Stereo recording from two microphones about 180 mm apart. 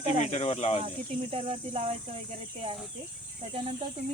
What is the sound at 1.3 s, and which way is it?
Speech, 30° right (ahead or behind).